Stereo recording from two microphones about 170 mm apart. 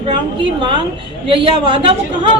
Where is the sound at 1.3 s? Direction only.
30° right (ahead or behind).